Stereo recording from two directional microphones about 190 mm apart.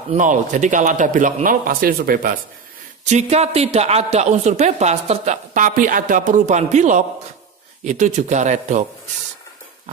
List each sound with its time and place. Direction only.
0.1 s a man's voice: 40° right (ahead or behind)
3.1 s speech: 35° right (ahead or behind)